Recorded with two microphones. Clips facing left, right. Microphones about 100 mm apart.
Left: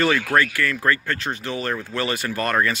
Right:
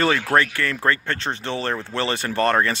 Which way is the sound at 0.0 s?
30° right (ahead or behind).